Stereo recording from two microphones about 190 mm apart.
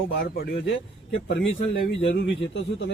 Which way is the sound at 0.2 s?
65° left (ahead or behind).